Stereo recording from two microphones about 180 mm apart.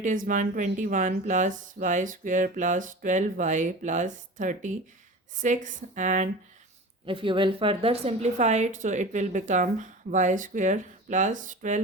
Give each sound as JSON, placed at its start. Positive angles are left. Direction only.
{"t": 0.0, "sound": "a woman's voice", "side_deg": -45}
{"t": 7.0, "sound": "a woman's voice", "side_deg": -30}